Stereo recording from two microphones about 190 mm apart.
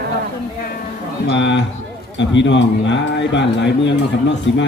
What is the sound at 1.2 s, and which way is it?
Speech, 70° left (ahead or behind).